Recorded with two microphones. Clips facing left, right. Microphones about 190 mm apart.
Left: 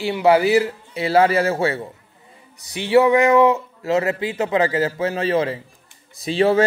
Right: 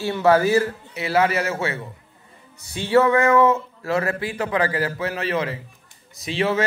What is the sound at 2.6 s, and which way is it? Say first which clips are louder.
A man's voice: left 2 dB; 15° left (ahead or behind).